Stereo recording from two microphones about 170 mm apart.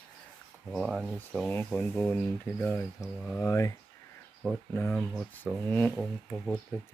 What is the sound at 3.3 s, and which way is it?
Speech, 5° left (ahead or behind).